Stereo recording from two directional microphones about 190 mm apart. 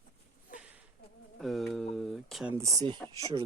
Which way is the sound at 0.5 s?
5° right (ahead or behind).